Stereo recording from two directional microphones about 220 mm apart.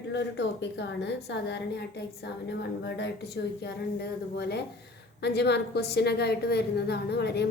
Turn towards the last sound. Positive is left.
turn(degrees=50)  # may be behind; listen again after turning